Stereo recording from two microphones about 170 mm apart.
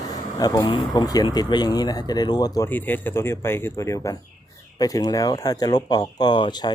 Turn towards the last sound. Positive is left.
turn(degrees=25)  # may be behind; listen again after turning